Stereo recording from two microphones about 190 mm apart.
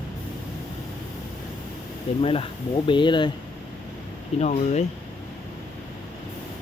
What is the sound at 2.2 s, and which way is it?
Speech, 30° left (ahead or behind).